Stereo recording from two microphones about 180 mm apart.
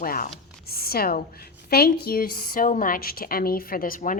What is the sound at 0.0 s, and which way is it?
A woman's voice, 50° left (ahead or behind).